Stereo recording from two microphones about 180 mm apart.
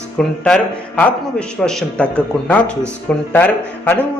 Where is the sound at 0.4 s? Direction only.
5° left (ahead or behind).